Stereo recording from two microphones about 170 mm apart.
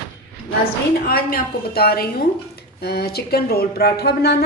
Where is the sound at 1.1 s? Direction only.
65° left (ahead or behind).